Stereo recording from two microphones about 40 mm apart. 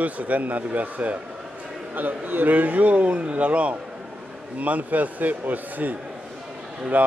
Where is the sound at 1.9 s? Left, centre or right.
Right.